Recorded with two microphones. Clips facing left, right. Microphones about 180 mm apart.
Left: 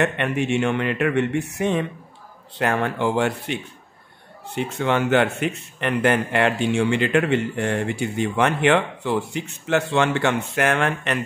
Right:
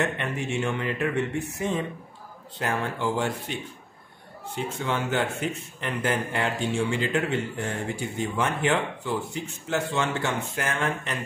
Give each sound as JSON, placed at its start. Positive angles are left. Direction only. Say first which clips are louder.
{"t": 0.0, "sound": "speech", "louder": "left 6 dB", "side_deg": 70}
{"t": 4.6, "sound": "speech", "louder": "left 7 dB", "side_deg": 70}